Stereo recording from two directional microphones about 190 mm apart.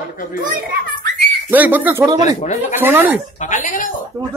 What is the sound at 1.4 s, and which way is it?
Speech, 10° right (ahead or behind).